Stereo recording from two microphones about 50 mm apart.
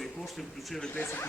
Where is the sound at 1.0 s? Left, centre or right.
Left.